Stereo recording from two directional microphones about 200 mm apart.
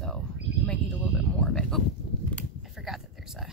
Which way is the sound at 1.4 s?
5° left (ahead or behind).